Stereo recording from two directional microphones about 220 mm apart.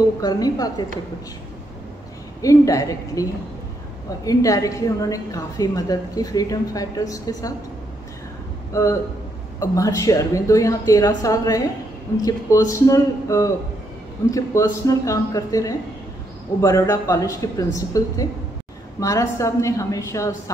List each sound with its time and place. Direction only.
0.2 s a woman's voice: 15° left (ahead or behind)
2.4 s a woman's voice: 15° left (ahead or behind)
4.3 s a woman's voice: 15° left (ahead or behind)
8.7 s a woman's voice: 15° left (ahead or behind)